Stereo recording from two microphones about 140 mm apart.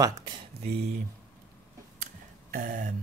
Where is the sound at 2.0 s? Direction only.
70° right (ahead or behind).